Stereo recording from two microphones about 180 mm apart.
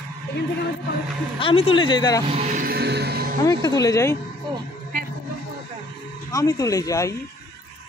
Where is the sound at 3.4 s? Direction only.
20° left (ahead or behind).